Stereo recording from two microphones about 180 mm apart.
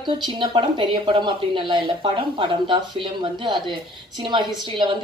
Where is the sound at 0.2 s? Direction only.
25° right (ahead or behind).